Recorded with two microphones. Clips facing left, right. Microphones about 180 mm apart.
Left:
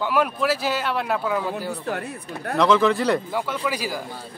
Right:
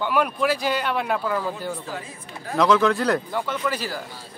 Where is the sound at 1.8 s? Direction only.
65° left (ahead or behind).